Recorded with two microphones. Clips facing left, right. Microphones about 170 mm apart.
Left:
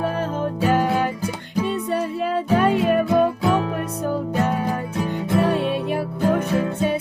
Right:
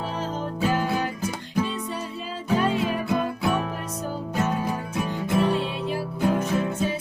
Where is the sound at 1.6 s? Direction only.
60° left (ahead or behind).